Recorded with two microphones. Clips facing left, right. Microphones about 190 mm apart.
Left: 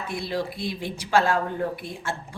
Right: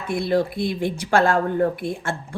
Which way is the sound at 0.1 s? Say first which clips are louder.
Right 9 dB; 55° right (ahead or behind).